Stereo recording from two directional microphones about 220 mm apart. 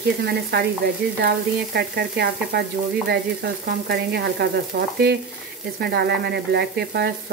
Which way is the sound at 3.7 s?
45° right (ahead or behind).